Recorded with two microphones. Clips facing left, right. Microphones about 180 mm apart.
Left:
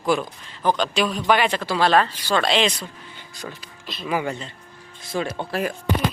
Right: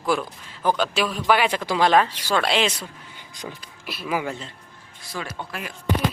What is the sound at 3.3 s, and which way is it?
Speech, 20° right (ahead or behind).